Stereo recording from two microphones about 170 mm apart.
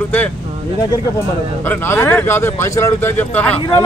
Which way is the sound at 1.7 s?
15° left (ahead or behind).